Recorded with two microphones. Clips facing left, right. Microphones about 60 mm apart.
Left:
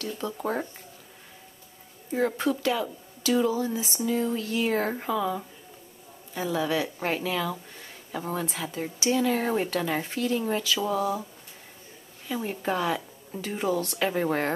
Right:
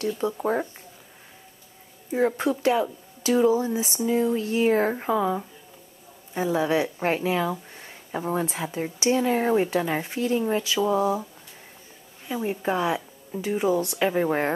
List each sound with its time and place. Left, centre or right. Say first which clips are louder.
0.1 s speech: right 2 dB; centre
2.1 s speech: right 3 dB; right
7.7 s a sound: right 3 dB; right
8.5 s speech: right 3 dB; right
12.3 s speech: right 3 dB; centre